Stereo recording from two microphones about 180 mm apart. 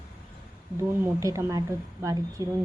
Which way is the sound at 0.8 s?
15° right (ahead or behind).